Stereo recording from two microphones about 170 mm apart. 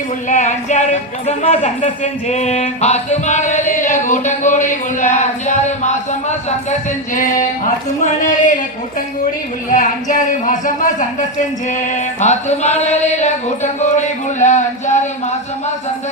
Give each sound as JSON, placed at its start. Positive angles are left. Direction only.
{"t": 0.3, "sound": "speech", "side_deg": 45}
{"t": 9.7, "sound": "speech", "side_deg": 50}